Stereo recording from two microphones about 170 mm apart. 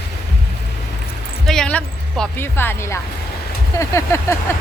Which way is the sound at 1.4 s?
5° left (ahead or behind).